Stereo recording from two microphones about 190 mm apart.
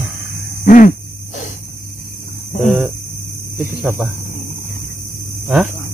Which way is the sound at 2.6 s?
Centre (ahead or behind).